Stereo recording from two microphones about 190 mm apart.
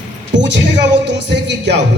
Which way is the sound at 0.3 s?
70° right (ahead or behind).